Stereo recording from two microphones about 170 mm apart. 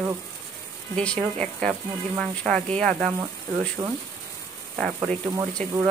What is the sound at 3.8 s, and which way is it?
Speech, 15° right (ahead or behind).